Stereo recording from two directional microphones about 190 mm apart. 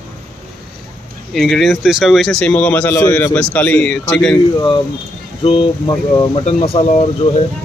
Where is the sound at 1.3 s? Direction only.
Centre (ahead or behind).